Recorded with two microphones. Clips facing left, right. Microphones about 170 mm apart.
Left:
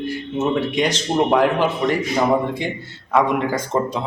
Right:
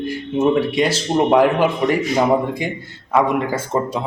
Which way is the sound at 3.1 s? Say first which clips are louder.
Right 1 dB; 5° right (ahead or behind).